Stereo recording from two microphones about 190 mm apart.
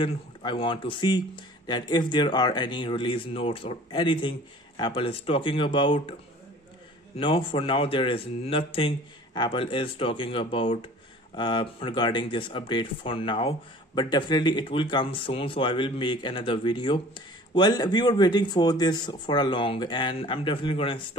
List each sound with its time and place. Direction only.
0.0 s speech: 25° left (ahead or behind)
7.2 s speech: 25° left (ahead or behind)